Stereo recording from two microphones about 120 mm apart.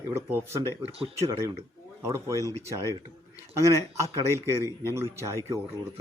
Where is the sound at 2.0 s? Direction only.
20° right (ahead or behind).